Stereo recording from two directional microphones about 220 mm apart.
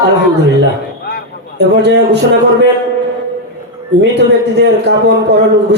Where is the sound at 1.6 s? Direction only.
50° right (ahead or behind).